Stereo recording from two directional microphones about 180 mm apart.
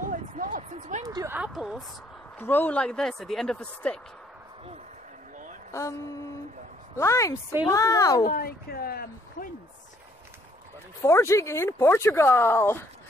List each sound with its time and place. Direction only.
0.4 s a sound: 45° right (ahead or behind)
1.0 s a sound: 20° right (ahead or behind)
1.3 s speech: 5° right (ahead or behind)
2.3 s speech: 10° left (ahead or behind)
5.7 s speech: 15° left (ahead or behind)
7.0 s speech: 15° left (ahead or behind)
8.3 s speech: 55° left (ahead or behind)
11.0 s speech: 15° left (ahead or behind)